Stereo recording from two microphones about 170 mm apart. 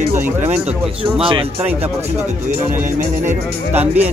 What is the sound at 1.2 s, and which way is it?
Speech, 30° right (ahead or behind).